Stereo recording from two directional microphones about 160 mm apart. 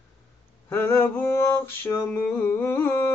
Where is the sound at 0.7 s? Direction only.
15° left (ahead or behind).